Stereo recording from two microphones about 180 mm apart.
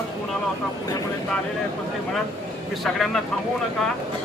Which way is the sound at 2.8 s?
Centre (ahead or behind).